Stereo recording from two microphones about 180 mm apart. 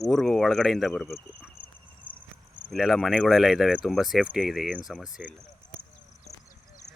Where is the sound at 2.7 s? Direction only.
Centre (ahead or behind).